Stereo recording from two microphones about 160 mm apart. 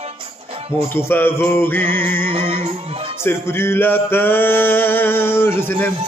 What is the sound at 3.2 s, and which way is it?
Male singing, 15° left (ahead or behind).